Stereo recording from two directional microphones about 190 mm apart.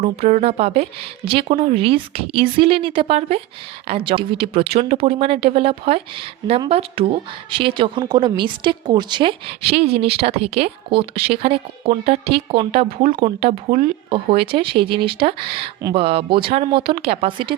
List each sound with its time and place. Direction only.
0.0 s a woman's voice: 35° right (ahead or behind)